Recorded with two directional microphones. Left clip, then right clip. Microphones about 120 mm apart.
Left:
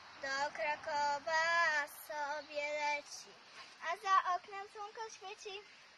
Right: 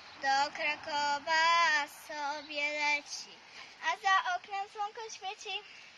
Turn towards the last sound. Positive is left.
turn(degrees=15)  # may be behind; listen again after turning